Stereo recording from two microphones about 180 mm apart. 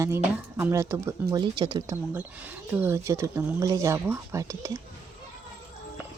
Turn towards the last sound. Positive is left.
turn(degrees=-15)  # may be behind; listen again after turning